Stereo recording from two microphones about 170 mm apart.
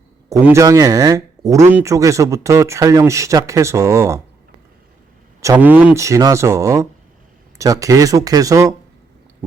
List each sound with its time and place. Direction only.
0.3 s speech: 20° right (ahead or behind)
5.4 s speech: 15° right (ahead or behind)